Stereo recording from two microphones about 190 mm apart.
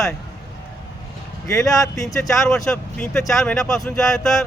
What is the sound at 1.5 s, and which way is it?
Speech, 20° left (ahead or behind).